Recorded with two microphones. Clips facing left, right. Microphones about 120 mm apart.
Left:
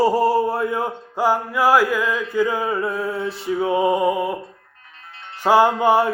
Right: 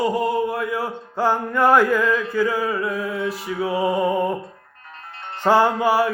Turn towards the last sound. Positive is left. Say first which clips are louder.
# left 2 dB
turn(degrees=20)  # may be behind; listen again after turning